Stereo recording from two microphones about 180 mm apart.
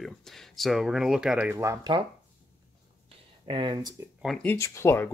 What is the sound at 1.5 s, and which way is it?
Speech, 15° right (ahead or behind).